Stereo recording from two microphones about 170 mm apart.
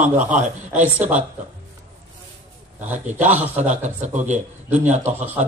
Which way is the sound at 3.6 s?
45° right (ahead or behind).